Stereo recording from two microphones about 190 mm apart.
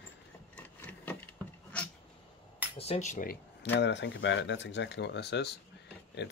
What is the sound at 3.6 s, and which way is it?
Speech, 70° left (ahead or behind).